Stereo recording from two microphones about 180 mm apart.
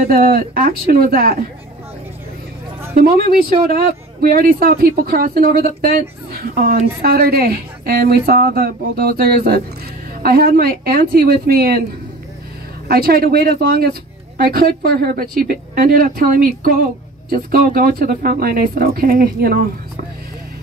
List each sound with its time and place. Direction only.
0.1 s speech: 55° right (ahead or behind)
3.0 s speech: 55° right (ahead or behind)
12.8 s a woman's voice: 60° right (ahead or behind)